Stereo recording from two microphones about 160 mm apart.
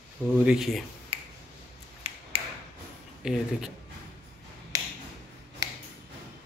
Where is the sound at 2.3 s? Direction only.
35° right (ahead or behind).